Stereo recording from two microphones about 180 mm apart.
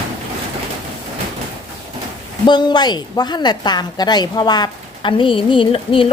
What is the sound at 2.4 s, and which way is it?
A woman's voice, 25° left (ahead or behind).